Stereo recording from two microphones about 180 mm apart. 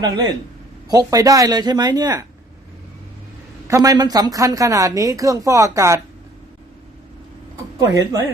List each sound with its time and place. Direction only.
0.9 s a woman's voice: 20° right (ahead or behind)
3.7 s a woman's voice: 20° right (ahead or behind)
7.8 s a woman's voice: 20° right (ahead or behind)